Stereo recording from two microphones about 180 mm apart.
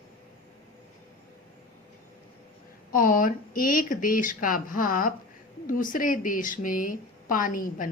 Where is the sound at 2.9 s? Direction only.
50° left (ahead or behind).